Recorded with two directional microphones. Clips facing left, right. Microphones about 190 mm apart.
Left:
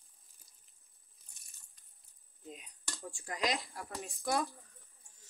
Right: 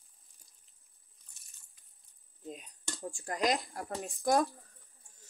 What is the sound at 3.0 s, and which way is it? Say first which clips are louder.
Speech: right 4 dB; 40° right (ahead or behind).